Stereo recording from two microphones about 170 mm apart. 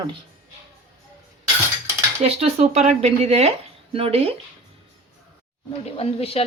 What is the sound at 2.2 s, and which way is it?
Speech, 40° right (ahead or behind).